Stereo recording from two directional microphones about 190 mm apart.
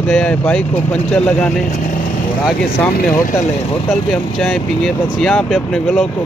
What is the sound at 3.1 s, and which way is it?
Speech, 45° left (ahead or behind).